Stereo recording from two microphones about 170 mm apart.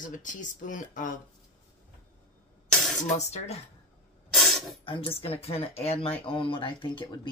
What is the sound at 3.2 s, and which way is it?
Speech, 40° left (ahead or behind).